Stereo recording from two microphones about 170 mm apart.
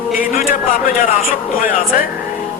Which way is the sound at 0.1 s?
55° left (ahead or behind).